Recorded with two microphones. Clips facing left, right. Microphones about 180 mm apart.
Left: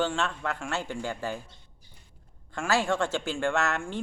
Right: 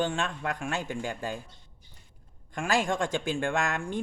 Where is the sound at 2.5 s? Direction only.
15° right (ahead or behind).